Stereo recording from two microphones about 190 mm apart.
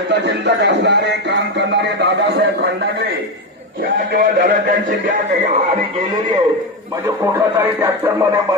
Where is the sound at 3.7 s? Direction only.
50° right (ahead or behind).